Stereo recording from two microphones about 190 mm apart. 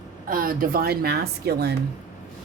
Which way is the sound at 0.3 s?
50° right (ahead or behind).